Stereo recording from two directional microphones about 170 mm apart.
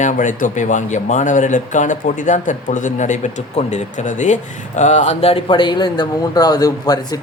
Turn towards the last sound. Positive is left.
turn(degrees=20)  # may be behind; listen again after turning